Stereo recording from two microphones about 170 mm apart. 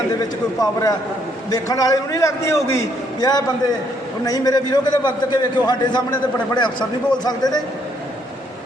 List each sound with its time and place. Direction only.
0.2 s a man's voice: 20° left (ahead or behind)